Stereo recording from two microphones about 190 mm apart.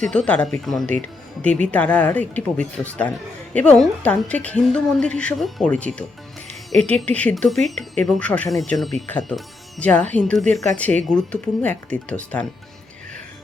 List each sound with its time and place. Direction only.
0.0 s a woman's voice: 5° left (ahead or behind)